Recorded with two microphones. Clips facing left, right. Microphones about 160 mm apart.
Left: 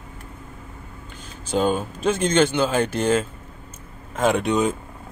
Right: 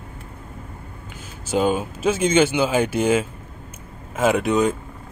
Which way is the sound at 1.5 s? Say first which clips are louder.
Right 1 dB; 10° right (ahead or behind).